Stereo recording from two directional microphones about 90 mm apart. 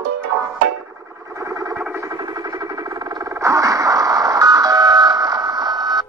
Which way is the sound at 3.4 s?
35° right (ahead or behind).